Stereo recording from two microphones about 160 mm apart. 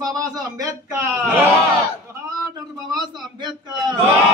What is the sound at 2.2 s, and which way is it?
A man's voice, 25° right (ahead or behind).